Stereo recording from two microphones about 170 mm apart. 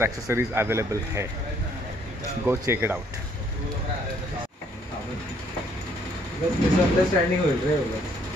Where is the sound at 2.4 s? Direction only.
15° right (ahead or behind).